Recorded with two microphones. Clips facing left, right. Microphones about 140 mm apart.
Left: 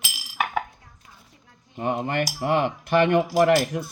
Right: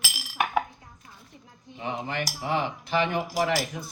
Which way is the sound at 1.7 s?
55° left (ahead or behind).